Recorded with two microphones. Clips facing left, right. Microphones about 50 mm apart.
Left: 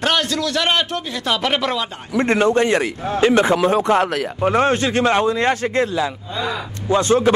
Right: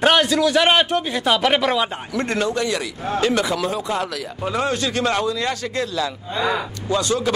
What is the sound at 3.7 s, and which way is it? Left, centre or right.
Speech, left.